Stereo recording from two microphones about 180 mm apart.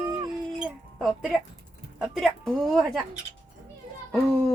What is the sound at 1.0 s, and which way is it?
Speech, centre (ahead or behind).